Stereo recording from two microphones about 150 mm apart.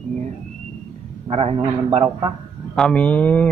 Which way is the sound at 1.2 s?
40° right (ahead or behind).